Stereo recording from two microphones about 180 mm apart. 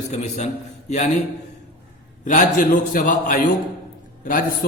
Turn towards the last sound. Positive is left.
turn(degrees=50)  # may be behind; listen again after turning